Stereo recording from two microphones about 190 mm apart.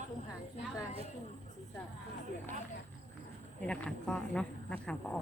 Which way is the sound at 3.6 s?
5° left (ahead or behind).